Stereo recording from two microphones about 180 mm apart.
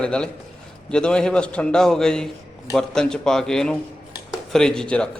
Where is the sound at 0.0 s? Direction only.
5° left (ahead or behind).